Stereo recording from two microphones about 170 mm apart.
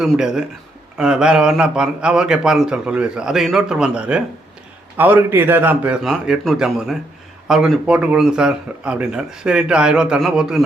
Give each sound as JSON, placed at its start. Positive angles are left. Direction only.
{"t": 0.0, "sound": "speech", "side_deg": -5}